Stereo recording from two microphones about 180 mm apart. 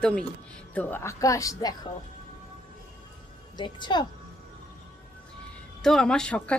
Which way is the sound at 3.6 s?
25° left (ahead or behind).